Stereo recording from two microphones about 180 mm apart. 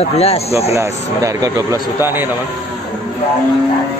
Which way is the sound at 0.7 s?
15° right (ahead or behind).